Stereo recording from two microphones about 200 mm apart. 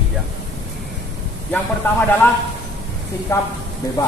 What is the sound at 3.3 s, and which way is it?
Speech, 15° left (ahead or behind).